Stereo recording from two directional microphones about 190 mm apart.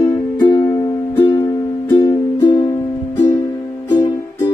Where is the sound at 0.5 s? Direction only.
15° left (ahead or behind).